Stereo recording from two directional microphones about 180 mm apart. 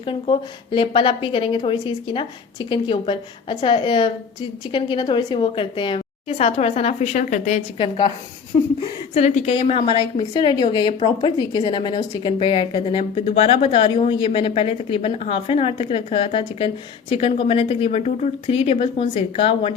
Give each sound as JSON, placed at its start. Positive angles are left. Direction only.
{"t": 0.0, "sound": "a woman's voice", "side_deg": 30}
{"t": 7.8, "sound": "a woman's voice", "side_deg": 25}
{"t": 9.1, "sound": "a woman's voice", "side_deg": 40}